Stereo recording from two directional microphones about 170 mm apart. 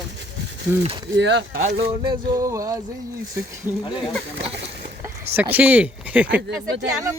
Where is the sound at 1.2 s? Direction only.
85° right.